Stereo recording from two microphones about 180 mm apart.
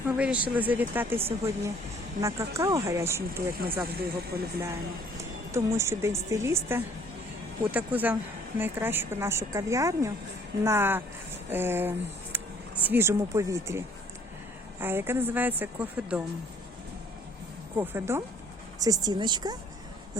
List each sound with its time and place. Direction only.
0.1 s a woman's voice: 5° right (ahead or behind)
3.5 s speech: 55° right (ahead or behind)
5.5 s a woman's voice: 15° right (ahead or behind)
17.7 s a woman's voice: 15° right (ahead or behind)